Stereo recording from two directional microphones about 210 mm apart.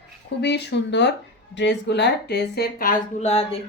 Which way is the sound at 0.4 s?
55° left (ahead or behind).